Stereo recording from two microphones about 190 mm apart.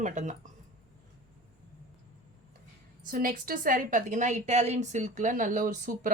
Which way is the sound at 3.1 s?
50° right (ahead or behind).